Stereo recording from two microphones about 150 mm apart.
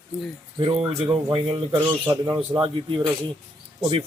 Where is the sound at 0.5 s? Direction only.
40° right (ahead or behind).